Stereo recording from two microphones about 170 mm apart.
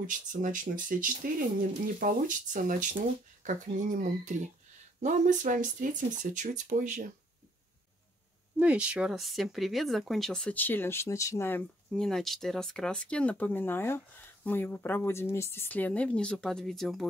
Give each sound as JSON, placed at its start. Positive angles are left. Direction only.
{"t": 0.0, "sound": "speech", "side_deg": -50}
{"t": 8.5, "sound": "speech", "side_deg": -5}
{"t": 11.9, "sound": "speech", "side_deg": 0}